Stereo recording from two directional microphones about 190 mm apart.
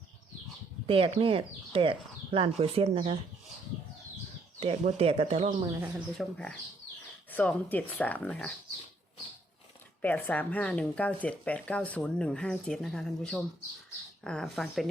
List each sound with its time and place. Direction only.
0.9 s speech: 30° right (ahead or behind)
4.6 s speech: 30° right (ahead or behind)
6.1 s speech: 5° left (ahead or behind)
10.0 s speech: 10° left (ahead or behind)